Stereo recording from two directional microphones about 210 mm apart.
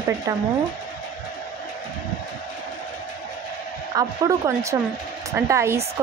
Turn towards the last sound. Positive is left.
turn(degrees=-15)  # may be behind; listen again after turning